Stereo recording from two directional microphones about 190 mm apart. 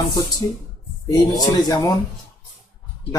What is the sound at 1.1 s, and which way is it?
Speech, 20° left (ahead or behind).